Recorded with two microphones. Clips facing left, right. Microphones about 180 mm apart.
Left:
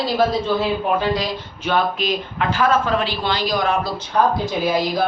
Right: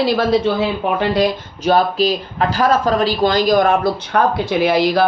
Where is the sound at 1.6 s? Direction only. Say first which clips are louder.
Right 6 dB; 35° right (ahead or behind).